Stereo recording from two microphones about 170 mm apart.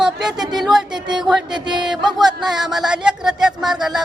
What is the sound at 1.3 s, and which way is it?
Speech, 25° right (ahead or behind).